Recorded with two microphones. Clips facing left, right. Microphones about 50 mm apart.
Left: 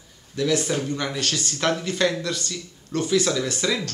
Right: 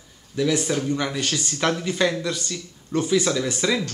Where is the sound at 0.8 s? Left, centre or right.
Centre.